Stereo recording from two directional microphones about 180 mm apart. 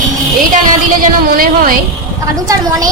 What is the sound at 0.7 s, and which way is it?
A woman's voice, 50° right (ahead or behind).